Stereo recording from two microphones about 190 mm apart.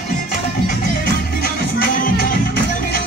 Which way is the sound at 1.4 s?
50° left (ahead or behind).